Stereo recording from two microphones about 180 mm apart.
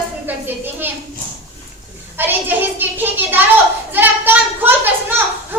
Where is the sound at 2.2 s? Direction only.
10° right (ahead or behind).